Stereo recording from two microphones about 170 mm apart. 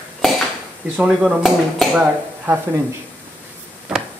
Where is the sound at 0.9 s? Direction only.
5° right (ahead or behind).